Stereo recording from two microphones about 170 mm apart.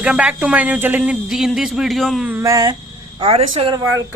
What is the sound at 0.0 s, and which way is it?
Speech, 5° right (ahead or behind).